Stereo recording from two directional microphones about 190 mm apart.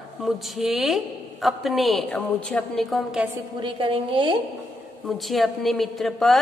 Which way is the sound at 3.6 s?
25° right (ahead or behind).